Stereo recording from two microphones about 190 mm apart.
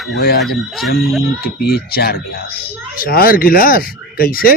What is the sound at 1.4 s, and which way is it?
Speech, 55° left (ahead or behind).